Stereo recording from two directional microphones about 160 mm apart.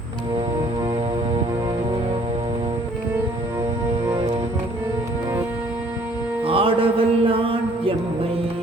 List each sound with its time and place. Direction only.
6.4 s music: 35° right (ahead or behind)